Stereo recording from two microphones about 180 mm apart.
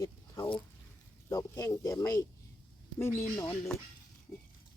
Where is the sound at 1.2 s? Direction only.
15° left (ahead or behind).